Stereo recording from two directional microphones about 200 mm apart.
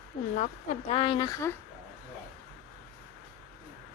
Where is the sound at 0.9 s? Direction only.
25° left (ahead or behind).